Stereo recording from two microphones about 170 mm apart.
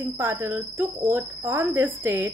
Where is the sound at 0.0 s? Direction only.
15° right (ahead or behind).